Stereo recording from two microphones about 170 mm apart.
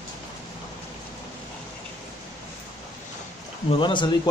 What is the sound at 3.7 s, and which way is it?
Speech, 30° left (ahead or behind).